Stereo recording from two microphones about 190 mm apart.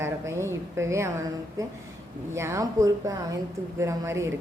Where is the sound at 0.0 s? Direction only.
15° right (ahead or behind).